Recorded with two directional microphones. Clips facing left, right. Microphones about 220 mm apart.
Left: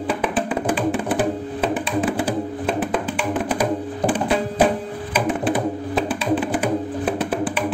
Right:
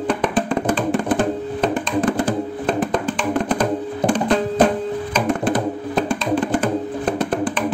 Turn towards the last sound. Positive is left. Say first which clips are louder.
# right 2 dB
turn(degrees=5)  # may be behind; listen again after turning